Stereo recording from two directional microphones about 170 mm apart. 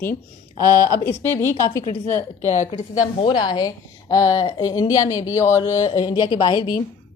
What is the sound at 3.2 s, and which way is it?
A woman's voice, 25° left (ahead or behind).